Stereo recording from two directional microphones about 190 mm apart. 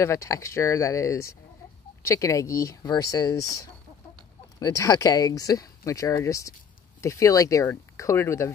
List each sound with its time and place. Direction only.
0.0 s speech: 15° left (ahead or behind)